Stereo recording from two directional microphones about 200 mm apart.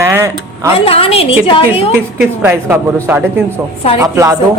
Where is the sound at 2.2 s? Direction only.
10° right (ahead or behind).